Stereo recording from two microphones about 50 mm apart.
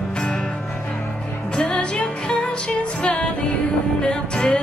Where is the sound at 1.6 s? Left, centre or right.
Left.